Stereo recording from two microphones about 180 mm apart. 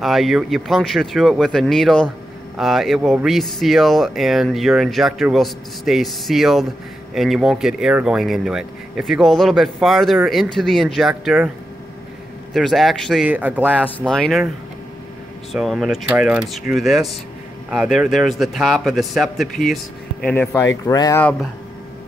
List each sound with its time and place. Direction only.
0.0 s speech: centre (ahead or behind)
12.5 s speech: centre (ahead or behind)
13.8 s speech: 5° left (ahead or behind)
15.5 s speech: centre (ahead or behind); by 21.2 s 20° left (ahead or behind)